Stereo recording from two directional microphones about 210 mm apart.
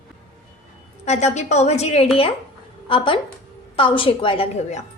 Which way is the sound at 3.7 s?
25° left (ahead or behind).